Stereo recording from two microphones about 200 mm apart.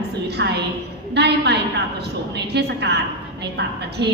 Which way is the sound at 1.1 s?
60° right (ahead or behind).